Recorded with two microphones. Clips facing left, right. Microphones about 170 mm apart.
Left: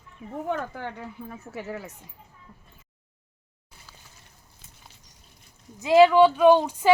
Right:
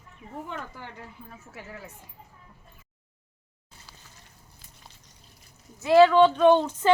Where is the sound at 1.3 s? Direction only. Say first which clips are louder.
Left 10 dB; 75° left (ahead or behind).